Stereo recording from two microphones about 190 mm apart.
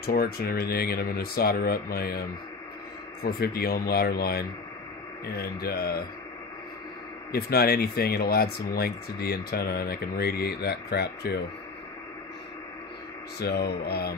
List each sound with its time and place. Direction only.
0.0 s speech: 55° left (ahead or behind)
7.3 s speech: 55° left (ahead or behind)
13.4 s speech: 60° left (ahead or behind)